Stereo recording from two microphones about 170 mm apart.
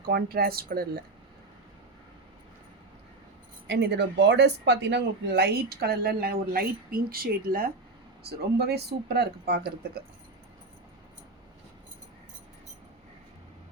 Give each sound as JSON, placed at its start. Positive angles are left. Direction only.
{"t": 0.0, "sound": "speech", "side_deg": -65}
{"t": 3.7, "sound": "speech", "side_deg": -80}